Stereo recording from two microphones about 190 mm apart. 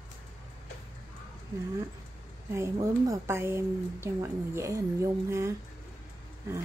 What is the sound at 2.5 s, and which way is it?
Speech, 15° right (ahead or behind).